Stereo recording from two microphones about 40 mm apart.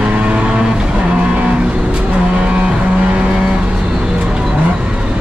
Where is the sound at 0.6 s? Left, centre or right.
Right.